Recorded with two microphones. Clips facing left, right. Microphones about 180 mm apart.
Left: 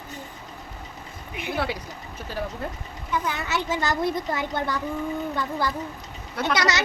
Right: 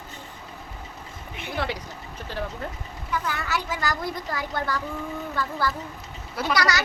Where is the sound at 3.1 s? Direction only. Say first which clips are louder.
Left 1 dB; 20° left (ahead or behind).